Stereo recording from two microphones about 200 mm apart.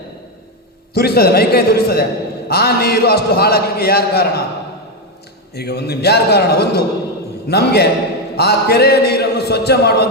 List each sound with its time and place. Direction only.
0.9 s a man's voice: 50° left (ahead or behind)
5.5 s a man's voice: 55° left (ahead or behind)